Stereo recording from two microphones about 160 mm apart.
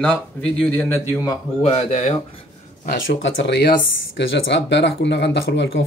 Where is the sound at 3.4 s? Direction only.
85° left.